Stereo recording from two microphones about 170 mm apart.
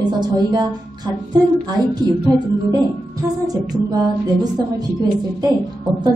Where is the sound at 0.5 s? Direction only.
25° right (ahead or behind).